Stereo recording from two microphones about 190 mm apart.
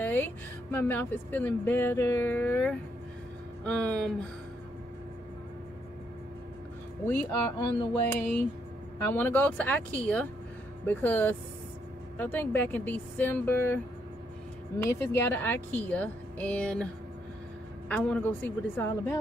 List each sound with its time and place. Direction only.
0.0 s speech: 10° left (ahead or behind)
7.1 s speech: 15° left (ahead or behind)
9.0 s speech: 10° left (ahead or behind)
14.8 s speech: 15° left (ahead or behind)
17.8 s speech: 5° left (ahead or behind)